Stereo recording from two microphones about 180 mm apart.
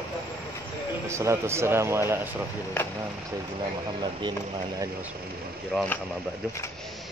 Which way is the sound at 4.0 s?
25° right (ahead or behind).